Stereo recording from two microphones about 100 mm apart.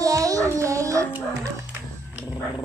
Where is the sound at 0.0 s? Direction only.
35° right (ahead or behind).